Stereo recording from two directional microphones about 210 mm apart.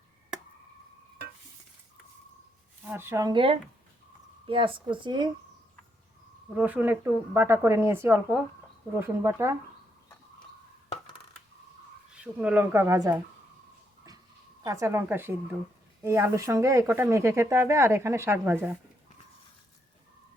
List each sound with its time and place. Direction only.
2.8 s speech: 10° right (ahead or behind)
6.5 s speech: 5° right (ahead or behind)
10.8 s coin: 25° left (ahead or behind)
12.1 s speech: 5° right (ahead or behind)
14.6 s speech: 15° right (ahead or behind)